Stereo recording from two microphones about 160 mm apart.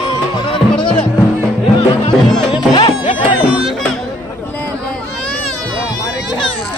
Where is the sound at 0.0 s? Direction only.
30° left (ahead or behind).